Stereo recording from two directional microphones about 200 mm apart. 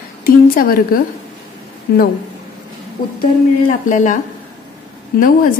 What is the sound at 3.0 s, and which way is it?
Speech, 50° left (ahead or behind).